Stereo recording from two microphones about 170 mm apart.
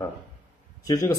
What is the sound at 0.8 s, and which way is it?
Speech, 20° left (ahead or behind).